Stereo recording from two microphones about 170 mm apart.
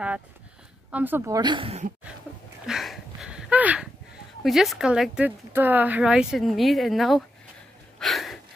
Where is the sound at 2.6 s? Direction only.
Centre (ahead or behind).